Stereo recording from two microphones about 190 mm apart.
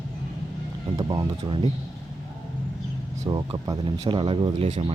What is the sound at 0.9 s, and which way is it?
Speech, 20° right (ahead or behind).